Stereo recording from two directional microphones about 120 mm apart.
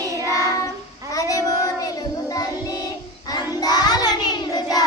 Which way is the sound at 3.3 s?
35° left (ahead or behind).